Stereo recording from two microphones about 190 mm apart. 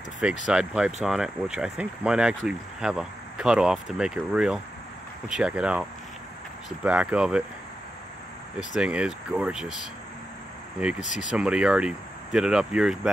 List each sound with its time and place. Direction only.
0.5 s speech: 5° right (ahead or behind)
8.5 s speech: 5° right (ahead or behind)
11.0 s speech: 40° left (ahead or behind)
11.3 s speech: 5° right (ahead or behind)